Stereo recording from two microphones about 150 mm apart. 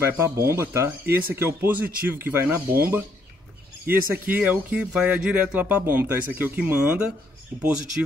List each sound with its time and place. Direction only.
0.0 s speech: 15° right (ahead or behind)